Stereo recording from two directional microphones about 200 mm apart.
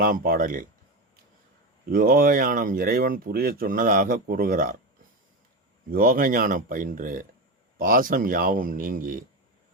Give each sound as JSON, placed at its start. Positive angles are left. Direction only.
{"t": 0.0, "sound": "speech", "side_deg": -45}
{"t": 1.9, "sound": "speech", "side_deg": -45}
{"t": 5.9, "sound": "speech", "side_deg": -45}